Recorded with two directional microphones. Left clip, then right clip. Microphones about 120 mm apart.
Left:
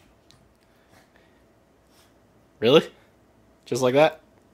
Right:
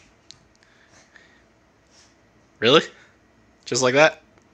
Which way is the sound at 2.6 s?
15° left (ahead or behind).